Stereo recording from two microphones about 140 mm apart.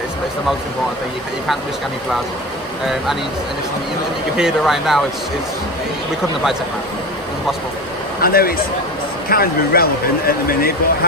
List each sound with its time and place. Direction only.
4.4 s speech: 5° right (ahead or behind)
8.2 s speech: 90° left